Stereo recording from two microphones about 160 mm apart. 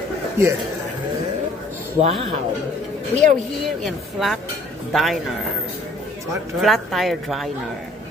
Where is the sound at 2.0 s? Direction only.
35° right (ahead or behind).